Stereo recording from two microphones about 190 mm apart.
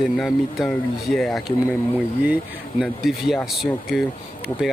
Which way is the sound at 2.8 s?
Centre (ahead or behind).